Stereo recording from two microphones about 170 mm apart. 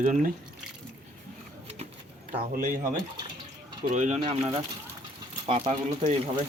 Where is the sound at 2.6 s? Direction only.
50° right (ahead or behind).